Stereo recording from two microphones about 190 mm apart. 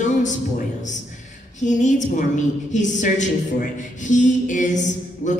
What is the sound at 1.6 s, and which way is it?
A woman's voice, 40° left (ahead or behind).